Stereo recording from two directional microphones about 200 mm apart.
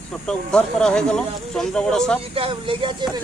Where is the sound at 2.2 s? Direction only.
25° right (ahead or behind).